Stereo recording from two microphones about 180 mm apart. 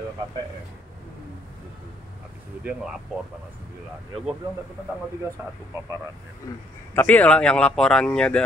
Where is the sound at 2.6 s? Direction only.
5° right (ahead or behind).